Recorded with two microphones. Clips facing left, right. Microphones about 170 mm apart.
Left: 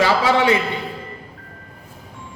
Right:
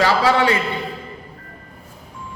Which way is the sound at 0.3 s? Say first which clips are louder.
Even; 15° left (ahead or behind).